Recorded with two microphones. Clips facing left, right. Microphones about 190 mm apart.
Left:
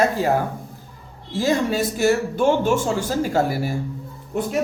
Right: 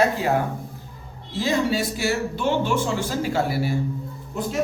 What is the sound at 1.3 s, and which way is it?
Speech, 45° left (ahead or behind).